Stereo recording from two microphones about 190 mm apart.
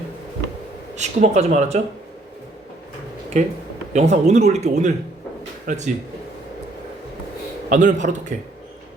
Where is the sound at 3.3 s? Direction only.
35° right (ahead or behind).